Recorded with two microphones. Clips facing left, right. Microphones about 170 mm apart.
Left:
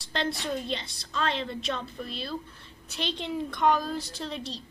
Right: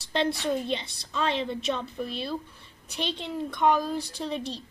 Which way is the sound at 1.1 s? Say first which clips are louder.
Right 2 dB; 15° right (ahead or behind).